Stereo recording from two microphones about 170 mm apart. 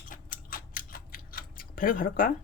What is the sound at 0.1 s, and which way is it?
Tick-tock, 55° left (ahead or behind).